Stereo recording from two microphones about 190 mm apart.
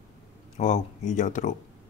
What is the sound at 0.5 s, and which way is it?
Speech, 40° left (ahead or behind).